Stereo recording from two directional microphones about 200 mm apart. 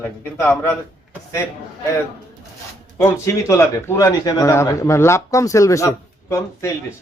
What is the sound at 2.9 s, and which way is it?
A man's voice, 15° left (ahead or behind).